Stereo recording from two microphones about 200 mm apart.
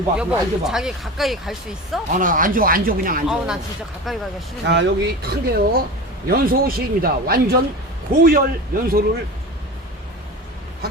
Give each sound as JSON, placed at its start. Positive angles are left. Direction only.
{"t": 0.2, "sound": "speech", "side_deg": -5}
{"t": 2.1, "sound": "speech", "side_deg": -45}
{"t": 3.2, "sound": "speech", "side_deg": -5}
{"t": 4.6, "sound": "speech", "side_deg": -60}